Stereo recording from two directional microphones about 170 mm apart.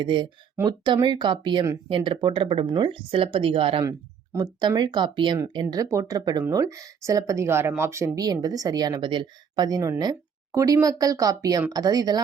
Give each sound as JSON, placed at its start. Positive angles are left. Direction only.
{"t": 0.0, "sound": "speech", "side_deg": -25}
{"t": 3.8, "sound": "speech", "side_deg": -20}